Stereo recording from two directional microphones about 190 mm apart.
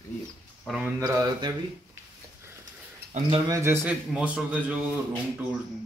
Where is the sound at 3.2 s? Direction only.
25° right (ahead or behind); by 4.7 s 5° right (ahead or behind).